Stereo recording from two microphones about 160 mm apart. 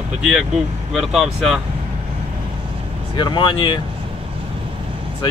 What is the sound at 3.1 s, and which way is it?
Speech, 30° left (ahead or behind).